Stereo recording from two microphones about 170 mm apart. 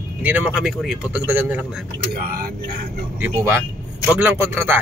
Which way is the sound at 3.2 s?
15° right (ahead or behind).